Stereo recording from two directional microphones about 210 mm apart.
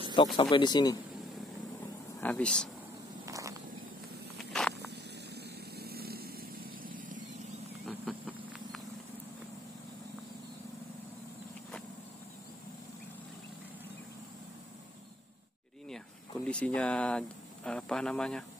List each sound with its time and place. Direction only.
0.1 s speech: 20° left (ahead or behind)
2.1 s speech: 5° left (ahead or behind)
3.3 s vehicle: 15° right (ahead or behind)
4.4 s walk: centre (ahead or behind)
4.7 s vehicle: 50° right (ahead or behind); by 7.6 s 35° right (ahead or behind)
7.8 s vehicle: centre (ahead or behind)
16.4 s speech: 5° left (ahead or behind)